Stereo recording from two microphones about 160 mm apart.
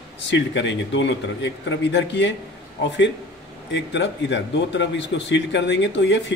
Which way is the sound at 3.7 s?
90° left.